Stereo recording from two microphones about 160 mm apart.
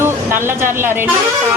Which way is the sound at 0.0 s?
15° right (ahead or behind).